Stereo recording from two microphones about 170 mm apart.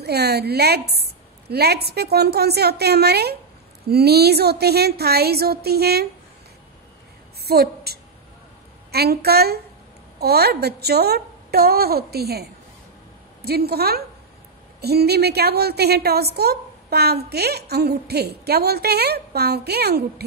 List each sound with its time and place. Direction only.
0.0 s a child's voice: 70° right (ahead or behind)
7.4 s a woman's voice: 65° right (ahead or behind)